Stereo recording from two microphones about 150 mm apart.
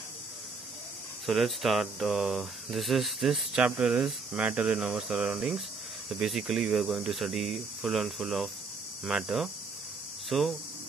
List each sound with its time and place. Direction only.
1.2 s speech: centre (ahead or behind)